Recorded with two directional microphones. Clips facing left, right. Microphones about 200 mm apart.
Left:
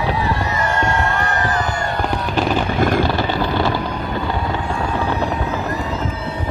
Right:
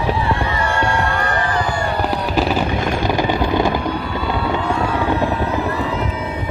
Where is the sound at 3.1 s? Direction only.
15° right (ahead or behind).